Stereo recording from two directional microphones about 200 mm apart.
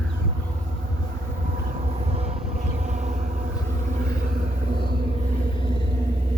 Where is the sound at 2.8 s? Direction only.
35° right (ahead or behind).